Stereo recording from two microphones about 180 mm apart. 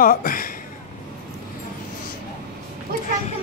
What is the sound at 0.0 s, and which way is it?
Speech, 50° left (ahead or behind).